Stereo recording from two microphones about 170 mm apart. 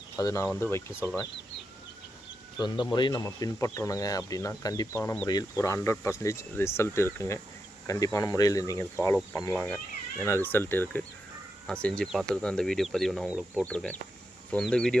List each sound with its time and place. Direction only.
0.2 s speech: 20° left (ahead or behind)
2.6 s speech: 25° left (ahead or behind); by 14.9 s 5° left (ahead or behind)